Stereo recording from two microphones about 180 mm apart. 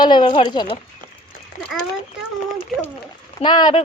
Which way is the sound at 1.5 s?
45° left (ahead or behind).